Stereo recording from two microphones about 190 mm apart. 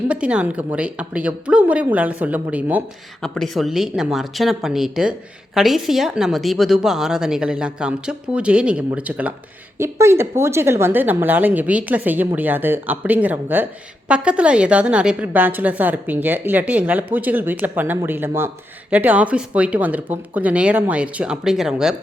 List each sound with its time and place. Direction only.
0.1 s a woman's voice: 5° right (ahead or behind)
3.2 s a woman's voice: 5° left (ahead or behind)